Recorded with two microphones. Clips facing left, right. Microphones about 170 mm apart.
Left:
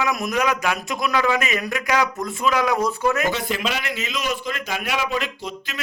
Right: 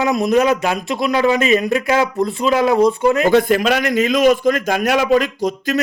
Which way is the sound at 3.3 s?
50° right (ahead or behind).